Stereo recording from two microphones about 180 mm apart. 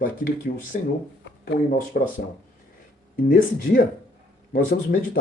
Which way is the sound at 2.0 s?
60° left (ahead or behind).